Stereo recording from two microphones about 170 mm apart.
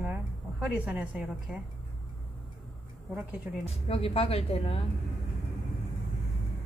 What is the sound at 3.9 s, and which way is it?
Speech, 35° left (ahead or behind).